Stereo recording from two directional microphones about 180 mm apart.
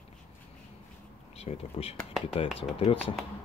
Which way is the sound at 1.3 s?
35° left (ahead or behind).